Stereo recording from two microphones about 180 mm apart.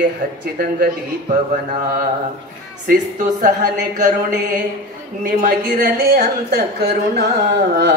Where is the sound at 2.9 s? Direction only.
45° right (ahead or behind).